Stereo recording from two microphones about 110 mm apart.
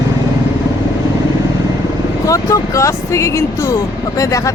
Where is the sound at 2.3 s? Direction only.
30° left (ahead or behind).